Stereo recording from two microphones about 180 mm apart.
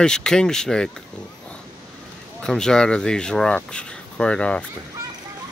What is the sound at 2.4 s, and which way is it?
Speech, 5° left (ahead or behind).